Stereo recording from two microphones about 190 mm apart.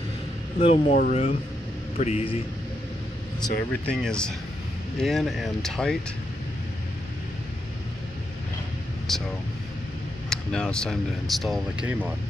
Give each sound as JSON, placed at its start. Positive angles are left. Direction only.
{"t": 0.6, "sound": "a man's voice", "side_deg": 30}
{"t": 3.7, "sound": "speech", "side_deg": 5}
{"t": 9.1, "sound": "speech", "side_deg": 0}
{"t": 10.3, "sound": "speech", "side_deg": 5}